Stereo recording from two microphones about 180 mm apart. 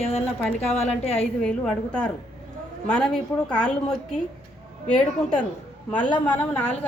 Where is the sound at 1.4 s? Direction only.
5° left (ahead or behind).